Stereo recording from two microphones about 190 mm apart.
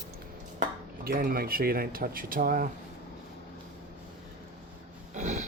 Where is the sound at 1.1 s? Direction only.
50° right (ahead or behind).